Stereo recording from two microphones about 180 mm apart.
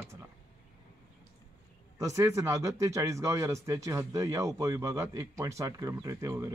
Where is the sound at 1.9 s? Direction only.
15° right (ahead or behind).